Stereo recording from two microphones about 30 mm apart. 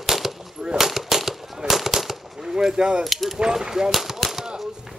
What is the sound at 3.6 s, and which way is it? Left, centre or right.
Speech, centre.